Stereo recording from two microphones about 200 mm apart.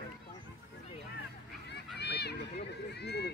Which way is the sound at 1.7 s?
55° left (ahead or behind).